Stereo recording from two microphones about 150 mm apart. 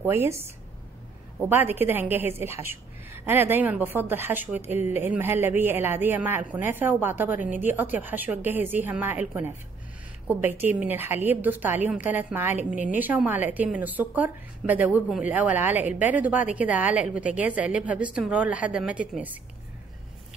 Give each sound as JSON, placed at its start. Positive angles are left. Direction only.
{"t": 0.0, "sound": "a woman's voice", "side_deg": -15}